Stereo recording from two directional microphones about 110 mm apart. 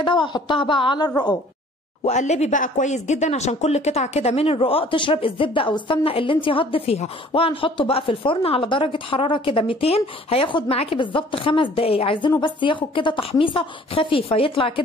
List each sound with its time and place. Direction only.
0.0 s speech: 45° left (ahead or behind)
2.0 s speech: 90° left; by 14.7 s 55° left (ahead or behind)